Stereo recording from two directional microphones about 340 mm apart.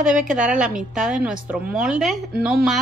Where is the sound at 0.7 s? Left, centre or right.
Centre.